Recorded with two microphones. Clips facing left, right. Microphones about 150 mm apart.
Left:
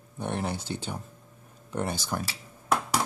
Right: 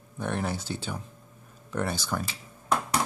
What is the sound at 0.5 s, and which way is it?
Speech, 60° left (ahead or behind).